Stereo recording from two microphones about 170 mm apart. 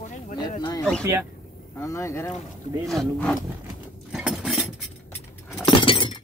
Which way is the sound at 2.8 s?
Centre (ahead or behind).